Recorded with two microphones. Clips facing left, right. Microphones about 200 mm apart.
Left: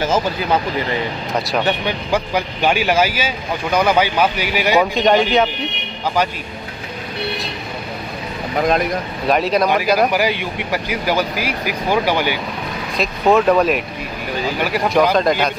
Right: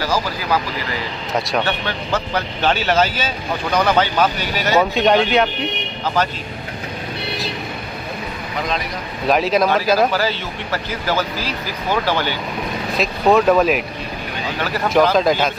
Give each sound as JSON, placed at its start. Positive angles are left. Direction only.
{"t": 0.0, "sound": "speech", "side_deg": 25}
{"t": 4.9, "sound": "speech", "side_deg": 0}
{"t": 8.5, "sound": "speech", "side_deg": 50}
{"t": 9.3, "sound": "speech", "side_deg": 0}
{"t": 9.9, "sound": "speech", "side_deg": 15}
{"t": 12.9, "sound": "speech", "side_deg": 0}
{"t": 15.0, "sound": "speech", "side_deg": 0}